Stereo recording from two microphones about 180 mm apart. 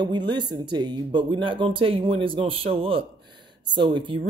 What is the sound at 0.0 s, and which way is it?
Speech, 25° right (ahead or behind).